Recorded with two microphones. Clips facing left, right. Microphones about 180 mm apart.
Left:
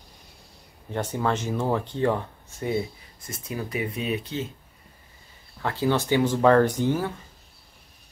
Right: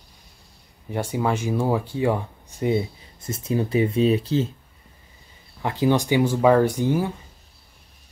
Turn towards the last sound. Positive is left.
turn(degrees=-10)  # may be behind; listen again after turning